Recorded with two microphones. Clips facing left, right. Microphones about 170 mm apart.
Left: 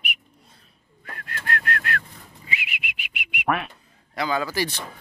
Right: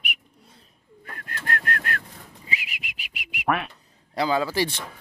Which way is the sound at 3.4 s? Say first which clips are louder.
Even; centre (ahead or behind).